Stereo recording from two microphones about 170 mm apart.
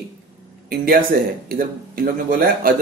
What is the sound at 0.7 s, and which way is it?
Speech, 60° right (ahead or behind).